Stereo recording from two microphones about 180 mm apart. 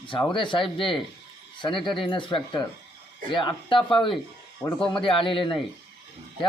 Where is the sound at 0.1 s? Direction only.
25° left (ahead or behind).